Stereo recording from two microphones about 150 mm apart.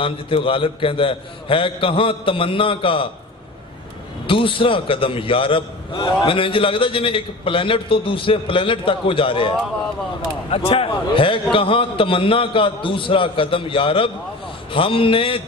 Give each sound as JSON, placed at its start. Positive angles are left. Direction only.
{"t": 0.0, "sound": "a man's voice", "side_deg": 35}
{"t": 4.3, "sound": "a man's voice", "side_deg": 35}
{"t": 10.5, "sound": "a man's voice", "side_deg": 40}